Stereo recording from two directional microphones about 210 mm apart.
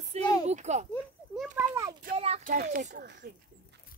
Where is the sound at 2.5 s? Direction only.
45° right (ahead or behind).